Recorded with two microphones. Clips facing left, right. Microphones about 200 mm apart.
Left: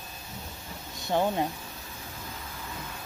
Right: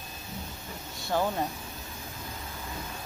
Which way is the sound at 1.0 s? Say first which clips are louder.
Left 2 dB; 20° left (ahead or behind).